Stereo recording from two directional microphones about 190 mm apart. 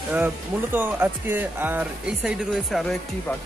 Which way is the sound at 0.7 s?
10° right (ahead or behind).